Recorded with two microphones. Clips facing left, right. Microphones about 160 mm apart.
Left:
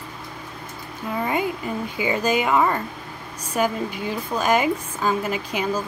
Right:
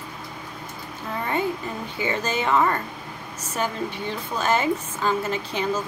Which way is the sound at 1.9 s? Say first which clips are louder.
Left 4 dB; 10° left (ahead or behind).